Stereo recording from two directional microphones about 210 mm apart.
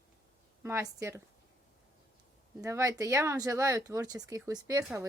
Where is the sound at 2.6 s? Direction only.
15° right (ahead or behind).